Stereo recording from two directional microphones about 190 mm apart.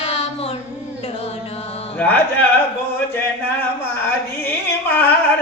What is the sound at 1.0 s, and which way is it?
Music, 35° left (ahead or behind).